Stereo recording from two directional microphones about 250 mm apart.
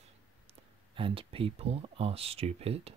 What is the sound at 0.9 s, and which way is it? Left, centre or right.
Speech, right.